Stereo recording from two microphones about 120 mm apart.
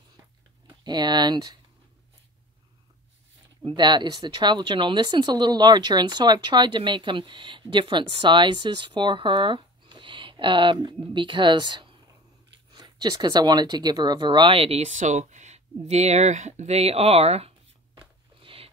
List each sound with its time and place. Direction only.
0.7 s speech: 35° right (ahead or behind)
3.6 s speech: 40° right (ahead or behind); by 17.6 s 60° right (ahead or behind)
18.4 s a sound: 50° right (ahead or behind)